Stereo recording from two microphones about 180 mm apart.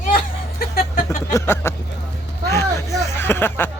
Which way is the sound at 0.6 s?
55° left (ahead or behind).